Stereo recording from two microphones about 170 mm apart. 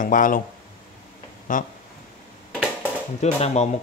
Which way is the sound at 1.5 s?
50° left (ahead or behind).